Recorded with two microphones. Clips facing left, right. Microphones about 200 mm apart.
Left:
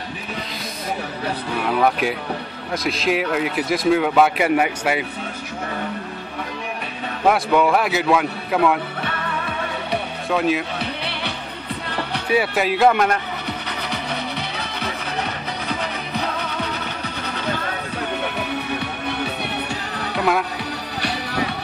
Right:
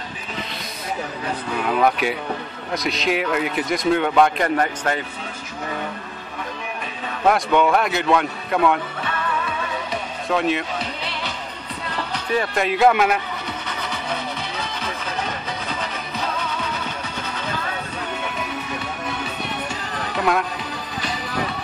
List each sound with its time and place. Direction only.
1.7 s a man's voice: centre (ahead or behind)
7.2 s a man's voice: 5° left (ahead or behind)
10.3 s a man's voice: centre (ahead or behind)
10.8 s music: 65° left (ahead or behind)
12.3 s a man's voice: 5° left (ahead or behind)
20.2 s speech: 5° left (ahead or behind)
21.0 s music: 70° left (ahead or behind)